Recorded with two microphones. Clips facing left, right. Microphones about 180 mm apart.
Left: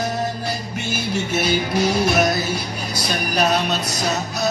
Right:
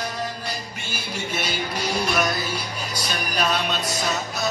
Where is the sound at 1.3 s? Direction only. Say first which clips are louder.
Left 7 dB; 45° left (ahead or behind).